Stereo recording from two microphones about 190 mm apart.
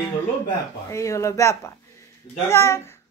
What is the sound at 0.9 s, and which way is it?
A man's voice, 15° left (ahead or behind).